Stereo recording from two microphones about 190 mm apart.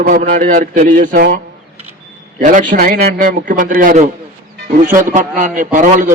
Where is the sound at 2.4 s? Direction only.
45° right (ahead or behind).